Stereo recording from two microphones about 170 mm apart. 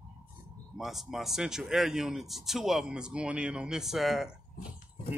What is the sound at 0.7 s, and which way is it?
Speech, centre (ahead or behind).